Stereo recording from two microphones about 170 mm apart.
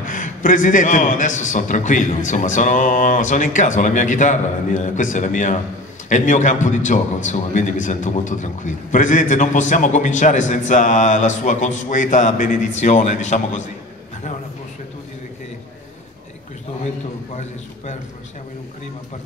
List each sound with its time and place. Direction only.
0.0 s a man's voice: 50° left (ahead or behind)